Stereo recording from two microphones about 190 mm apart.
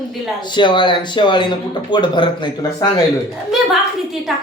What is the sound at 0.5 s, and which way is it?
Speech, 25° left (ahead or behind).